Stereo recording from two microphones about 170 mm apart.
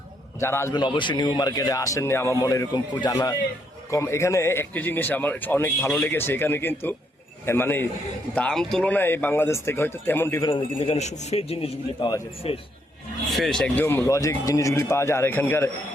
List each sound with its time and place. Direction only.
0.3 s speech: 15° left (ahead or behind)
0.8 s speech: 25° left (ahead or behind)
10.4 s a man's voice: 35° left (ahead or behind)
13.3 s speech: centre (ahead or behind)